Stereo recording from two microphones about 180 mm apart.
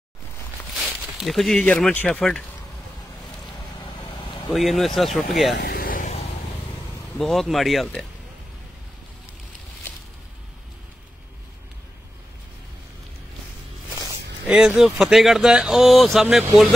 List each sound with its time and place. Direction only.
0.7 s speech: centre (ahead or behind)
4.5 s speech: centre (ahead or behind)
5.6 s vehicle: 55° left (ahead or behind)
7.2 s speech: centre (ahead or behind)
14.4 s speech: 5° right (ahead or behind)